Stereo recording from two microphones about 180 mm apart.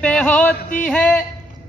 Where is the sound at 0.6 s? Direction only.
45° left (ahead or behind).